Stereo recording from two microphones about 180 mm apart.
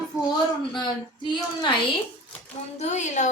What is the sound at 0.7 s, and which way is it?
A woman's voice, 25° left (ahead or behind).